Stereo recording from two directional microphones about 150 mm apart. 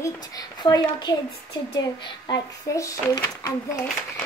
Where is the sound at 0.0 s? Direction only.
25° left (ahead or behind).